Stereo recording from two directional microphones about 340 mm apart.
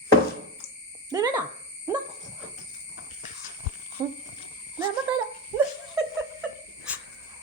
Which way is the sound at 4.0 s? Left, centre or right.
Centre.